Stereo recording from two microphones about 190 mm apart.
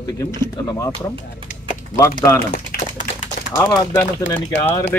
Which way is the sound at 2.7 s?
50° left (ahead or behind).